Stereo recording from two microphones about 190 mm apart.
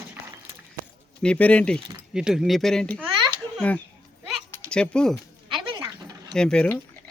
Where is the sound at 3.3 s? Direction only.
10° left (ahead or behind).